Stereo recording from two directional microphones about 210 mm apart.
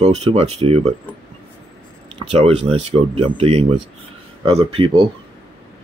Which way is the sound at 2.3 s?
30° right (ahead or behind).